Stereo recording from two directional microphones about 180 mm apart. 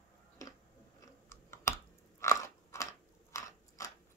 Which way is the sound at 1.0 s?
15° left (ahead or behind).